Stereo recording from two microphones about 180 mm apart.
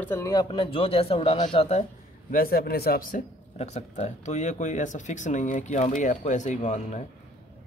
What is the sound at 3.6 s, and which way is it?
Speech, 40° left (ahead or behind).